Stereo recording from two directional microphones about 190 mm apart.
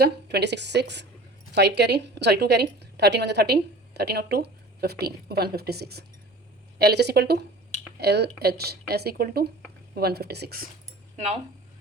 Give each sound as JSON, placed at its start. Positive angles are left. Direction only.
{"t": 0.0, "sound": "a woman's voice", "side_deg": -60}